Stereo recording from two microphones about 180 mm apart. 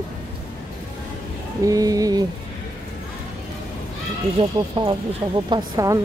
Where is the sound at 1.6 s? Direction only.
20° right (ahead or behind).